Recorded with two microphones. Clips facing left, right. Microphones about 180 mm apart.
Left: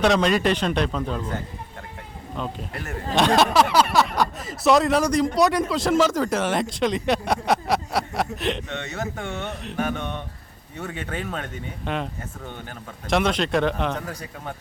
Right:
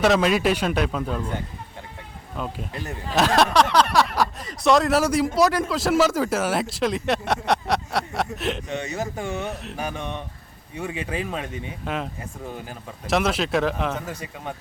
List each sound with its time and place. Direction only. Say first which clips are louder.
0.0 s speech: even; 5° right (ahead or behind)
2.4 s speech: even; 5° right (ahead or behind)
8.7 s speech: right 3 dB; 15° right (ahead or behind)
9.2 s speech: right 2 dB; 5° right (ahead or behind)